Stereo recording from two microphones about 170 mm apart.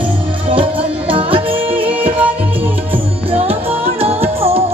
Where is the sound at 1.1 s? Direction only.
30° right (ahead or behind).